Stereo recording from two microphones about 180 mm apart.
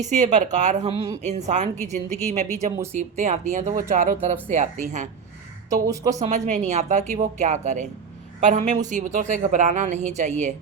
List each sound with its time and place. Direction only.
0.0 s speech: 40° right (ahead or behind)
5.8 s speech: 20° right (ahead or behind)
6.1 s speech: 40° right (ahead or behind)